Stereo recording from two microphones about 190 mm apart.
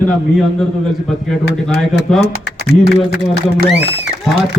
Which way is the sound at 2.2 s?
60° left (ahead or behind).